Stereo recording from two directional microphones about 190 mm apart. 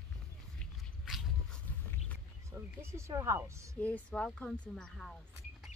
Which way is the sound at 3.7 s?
5° left (ahead or behind).